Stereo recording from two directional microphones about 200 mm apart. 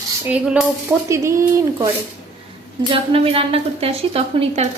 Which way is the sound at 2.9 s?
30° right (ahead or behind).